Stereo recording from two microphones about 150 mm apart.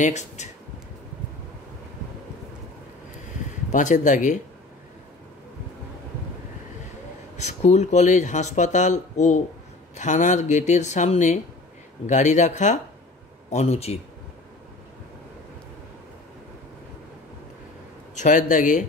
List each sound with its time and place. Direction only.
0.0 s speech: 50° left (ahead or behind)
3.7 s speech: 60° left (ahead or behind)
7.3 s speech: 50° left (ahead or behind)
18.1 s speech: 60° left (ahead or behind)